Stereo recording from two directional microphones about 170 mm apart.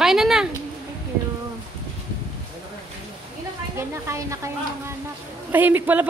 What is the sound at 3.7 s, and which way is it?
Speech, 15° right (ahead or behind).